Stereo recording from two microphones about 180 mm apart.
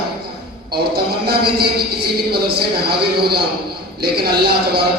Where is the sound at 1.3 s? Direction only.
60° right (ahead or behind).